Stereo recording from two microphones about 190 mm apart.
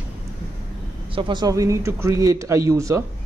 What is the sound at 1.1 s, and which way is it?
A man's voice, 25° right (ahead or behind).